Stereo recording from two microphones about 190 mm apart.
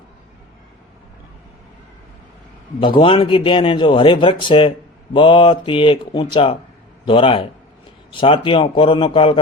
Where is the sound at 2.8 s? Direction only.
25° left (ahead or behind).